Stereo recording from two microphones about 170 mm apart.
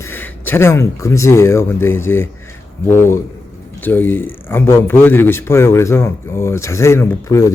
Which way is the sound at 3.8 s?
10° left (ahead or behind).